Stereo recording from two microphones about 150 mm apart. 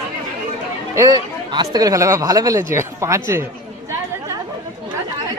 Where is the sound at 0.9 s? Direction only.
25° right (ahead or behind).